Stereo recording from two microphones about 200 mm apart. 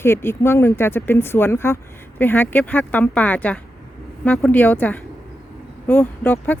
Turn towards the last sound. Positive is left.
turn(degrees=10)  # may be behind; listen again after turning